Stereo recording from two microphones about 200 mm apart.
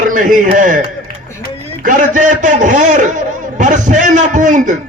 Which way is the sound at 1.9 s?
40° right (ahead or behind).